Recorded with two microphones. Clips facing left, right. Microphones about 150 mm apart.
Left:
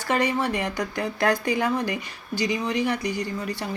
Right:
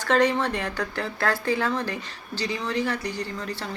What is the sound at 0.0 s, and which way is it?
Speech, 10° left (ahead or behind).